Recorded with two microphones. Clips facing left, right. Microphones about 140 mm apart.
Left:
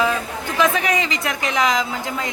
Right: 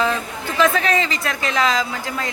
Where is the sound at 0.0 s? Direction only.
15° left (ahead or behind).